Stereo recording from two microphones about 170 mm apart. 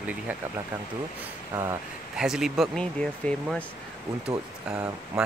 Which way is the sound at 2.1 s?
5° right (ahead or behind).